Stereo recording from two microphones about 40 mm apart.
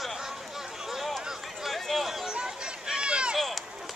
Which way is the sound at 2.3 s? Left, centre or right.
Centre.